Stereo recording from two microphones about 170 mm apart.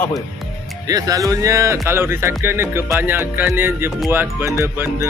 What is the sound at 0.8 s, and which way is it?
Speech, 20° right (ahead or behind).